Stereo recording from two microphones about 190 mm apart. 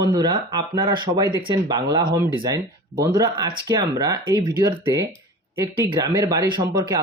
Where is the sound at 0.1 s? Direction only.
20° right (ahead or behind).